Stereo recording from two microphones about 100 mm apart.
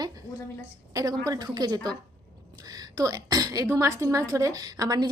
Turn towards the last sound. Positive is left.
turn(degrees=-35)  # may be behind; listen again after turning